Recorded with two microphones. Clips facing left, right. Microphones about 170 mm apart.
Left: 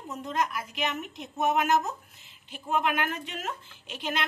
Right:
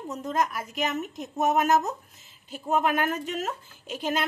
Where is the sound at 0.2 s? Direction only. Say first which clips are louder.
Right 2 dB; 45° right (ahead or behind).